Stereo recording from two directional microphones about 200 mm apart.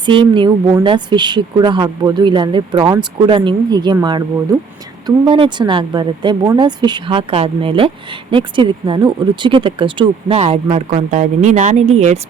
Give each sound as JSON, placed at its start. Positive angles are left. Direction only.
{"t": 0.0, "sound": "a woman's voice", "side_deg": -25}